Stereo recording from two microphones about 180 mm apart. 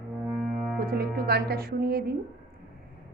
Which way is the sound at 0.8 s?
55° right (ahead or behind).